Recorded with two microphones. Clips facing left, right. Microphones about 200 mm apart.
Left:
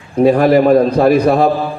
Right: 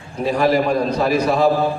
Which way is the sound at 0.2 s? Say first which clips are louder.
Left 8 dB; 55° left (ahead or behind).